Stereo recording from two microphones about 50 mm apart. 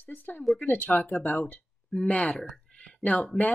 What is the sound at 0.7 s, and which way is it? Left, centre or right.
Speech, left.